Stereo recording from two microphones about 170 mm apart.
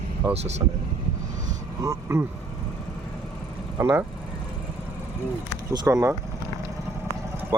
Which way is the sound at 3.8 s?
15° right (ahead or behind).